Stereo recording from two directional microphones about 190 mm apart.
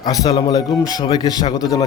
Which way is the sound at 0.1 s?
20° left (ahead or behind).